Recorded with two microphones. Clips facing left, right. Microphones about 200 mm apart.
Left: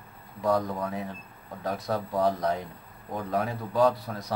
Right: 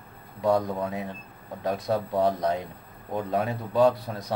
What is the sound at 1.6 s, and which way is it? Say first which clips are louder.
Speech: right 3 dB; 20° right (ahead or behind).